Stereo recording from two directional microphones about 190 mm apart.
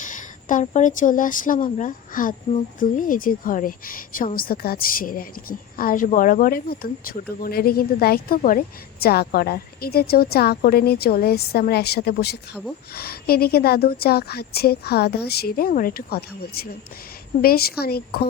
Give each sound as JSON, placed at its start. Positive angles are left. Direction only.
{"t": 0.0, "sound": "a woman's voice", "side_deg": 45}